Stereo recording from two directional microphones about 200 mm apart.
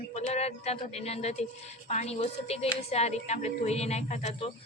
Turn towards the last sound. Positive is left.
turn(degrees=35)  # may be behind; listen again after turning